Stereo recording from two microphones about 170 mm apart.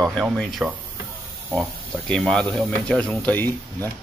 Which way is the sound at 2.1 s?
5° left (ahead or behind).